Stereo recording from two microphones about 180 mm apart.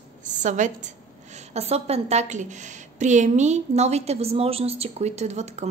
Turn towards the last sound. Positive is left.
turn(degrees=-40)  # may be behind; listen again after turning